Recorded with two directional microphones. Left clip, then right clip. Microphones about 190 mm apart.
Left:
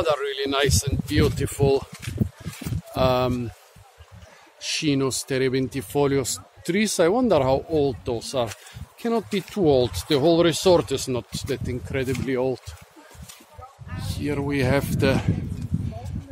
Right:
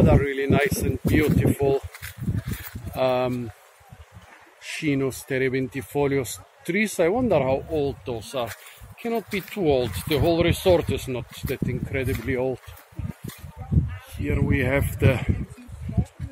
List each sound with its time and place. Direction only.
0.0 s speech: 15° left (ahead or behind)
2.9 s speech: 20° left (ahead or behind)
4.7 s speech: 15° left (ahead or behind)
14.2 s speech: 15° left (ahead or behind)